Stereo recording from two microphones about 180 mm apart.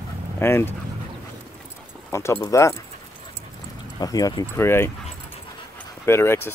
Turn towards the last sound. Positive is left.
turn(degrees=15)  # may be behind; listen again after turning